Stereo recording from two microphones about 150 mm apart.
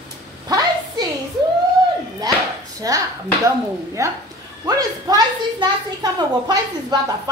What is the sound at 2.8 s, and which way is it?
A woman's voice, 25° right (ahead or behind).